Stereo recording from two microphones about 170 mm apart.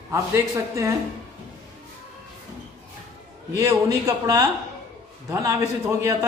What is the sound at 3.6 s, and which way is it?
Speech, 20° right (ahead or behind).